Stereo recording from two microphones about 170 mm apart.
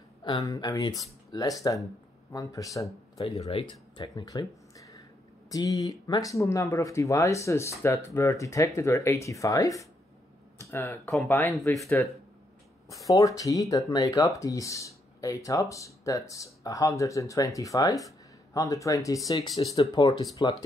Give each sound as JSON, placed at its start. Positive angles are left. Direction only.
{"t": 0.2, "sound": "speech", "side_deg": 25}
{"t": 3.3, "sound": "speech", "side_deg": 35}